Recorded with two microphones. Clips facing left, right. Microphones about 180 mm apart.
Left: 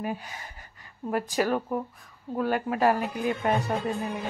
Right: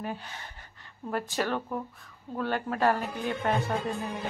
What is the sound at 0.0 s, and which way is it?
Music, 5° left (ahead or behind).